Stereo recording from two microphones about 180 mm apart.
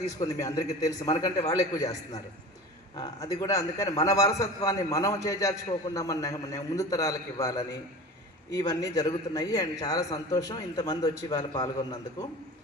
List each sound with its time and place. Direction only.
0.2 s a man's voice: 20° left (ahead or behind)